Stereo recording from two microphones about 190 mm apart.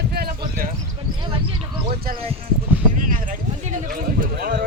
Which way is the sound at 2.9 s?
45° right (ahead or behind).